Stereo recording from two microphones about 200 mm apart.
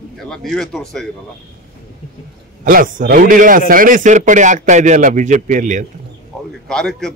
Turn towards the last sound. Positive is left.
turn(degrees=5)  # may be behind; listen again after turning